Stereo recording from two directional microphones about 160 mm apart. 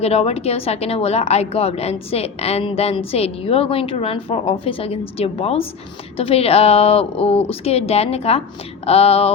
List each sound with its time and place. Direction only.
0.0 s a woman's voice: 40° left (ahead or behind)